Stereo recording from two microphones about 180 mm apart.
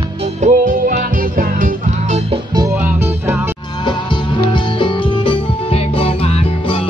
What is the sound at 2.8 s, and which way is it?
Music, 10° right (ahead or behind).